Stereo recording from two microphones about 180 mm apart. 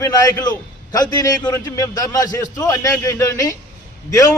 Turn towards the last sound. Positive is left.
turn(degrees=15)  # may be behind; listen again after turning